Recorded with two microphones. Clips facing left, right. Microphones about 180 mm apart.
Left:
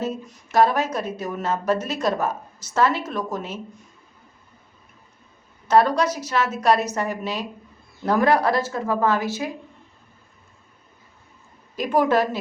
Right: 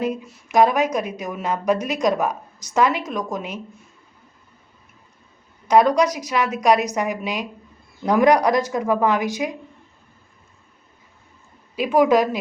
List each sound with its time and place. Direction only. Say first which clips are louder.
0.0 s a woman's voice: right 3 dB; 10° right (ahead or behind)
5.6 s a woman's voice: right 2 dB; 15° right (ahead or behind)
11.8 s a woman's voice: right 3 dB; 10° right (ahead or behind)